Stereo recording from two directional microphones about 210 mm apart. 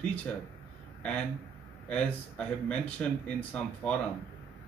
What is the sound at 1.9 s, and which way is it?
Speech, 5° left (ahead or behind).